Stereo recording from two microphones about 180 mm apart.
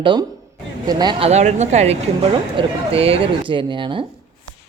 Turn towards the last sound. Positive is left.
turn(degrees=-25)  # may be behind; listen again after turning